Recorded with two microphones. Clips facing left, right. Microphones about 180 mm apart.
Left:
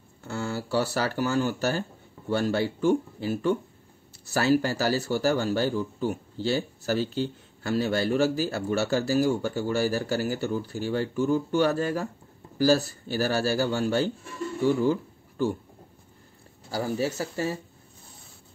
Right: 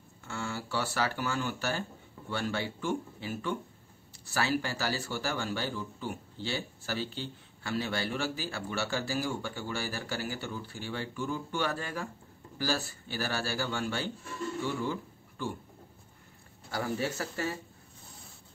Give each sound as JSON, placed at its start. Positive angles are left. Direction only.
{"t": 0.2, "sound": "speech", "side_deg": 40}
{"t": 16.7, "sound": "speech", "side_deg": 30}